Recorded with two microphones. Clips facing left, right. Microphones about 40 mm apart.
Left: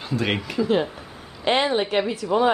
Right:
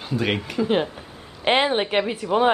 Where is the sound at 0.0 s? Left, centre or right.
Centre.